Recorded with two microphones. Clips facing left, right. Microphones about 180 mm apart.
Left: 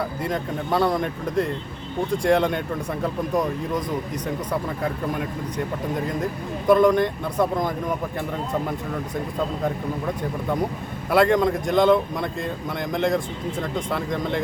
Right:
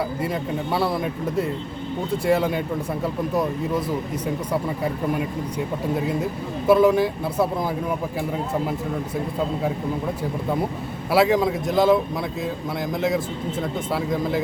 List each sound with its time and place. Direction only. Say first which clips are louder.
0.2 s speech: right 1 dB; 5° right (ahead or behind)
6.7 s speech: even; 5° right (ahead or behind)
11.1 s speech: even; 5° right (ahead or behind)